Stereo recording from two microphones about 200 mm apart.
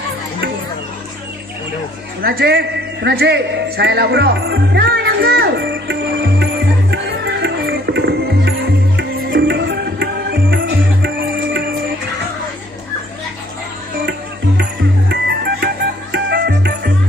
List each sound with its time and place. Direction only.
2.2 s a man's voice: 55° right (ahead or behind)
6.4 s music: 60° right (ahead or behind)
14.6 s music: 55° right (ahead or behind)